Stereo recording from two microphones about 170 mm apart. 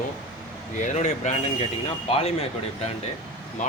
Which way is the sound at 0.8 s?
45° left (ahead or behind).